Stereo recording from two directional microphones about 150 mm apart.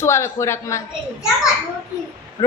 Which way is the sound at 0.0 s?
20° left (ahead or behind).